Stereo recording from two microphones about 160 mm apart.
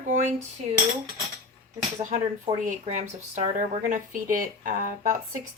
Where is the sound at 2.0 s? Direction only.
50° right (ahead or behind).